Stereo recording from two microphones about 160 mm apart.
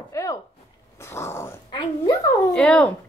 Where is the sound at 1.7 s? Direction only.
20° left (ahead or behind).